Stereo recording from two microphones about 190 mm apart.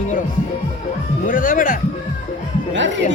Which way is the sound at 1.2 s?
45° left (ahead or behind).